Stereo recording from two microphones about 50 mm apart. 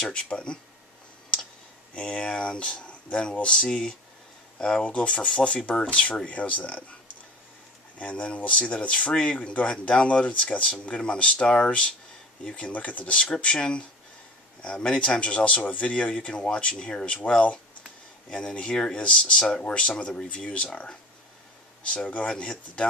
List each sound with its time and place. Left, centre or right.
0.0 s speech: centre
2.0 s speech: left
4.8 s speech: left
8.0 s speech: left
18.3 s speech: left
19.6 s speech: left